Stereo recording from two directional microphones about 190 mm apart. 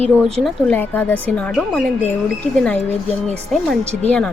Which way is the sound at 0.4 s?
10° left (ahead or behind).